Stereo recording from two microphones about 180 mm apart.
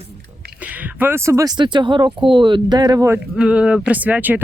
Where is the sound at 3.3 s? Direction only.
5° right (ahead or behind).